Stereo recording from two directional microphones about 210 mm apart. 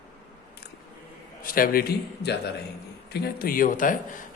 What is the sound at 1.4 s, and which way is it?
A man's voice, 45° left (ahead or behind).